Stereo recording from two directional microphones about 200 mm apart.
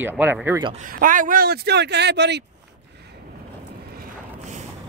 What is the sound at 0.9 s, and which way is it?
Speech, 45° right (ahead or behind).